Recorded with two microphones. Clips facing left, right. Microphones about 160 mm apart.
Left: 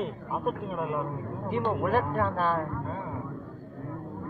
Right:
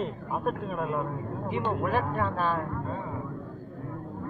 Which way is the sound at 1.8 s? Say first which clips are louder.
Left 2 dB; 45° left (ahead or behind).